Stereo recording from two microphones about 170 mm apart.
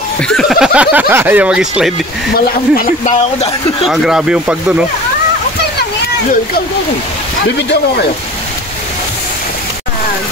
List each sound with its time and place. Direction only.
0.2 s speech: 5° left (ahead or behind)
2.3 s speech: 60° left (ahead or behind)
3.8 s speech: centre (ahead or behind)
7.5 s speech: 75° left (ahead or behind)